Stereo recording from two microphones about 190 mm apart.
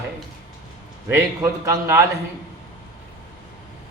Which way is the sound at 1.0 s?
15° right (ahead or behind).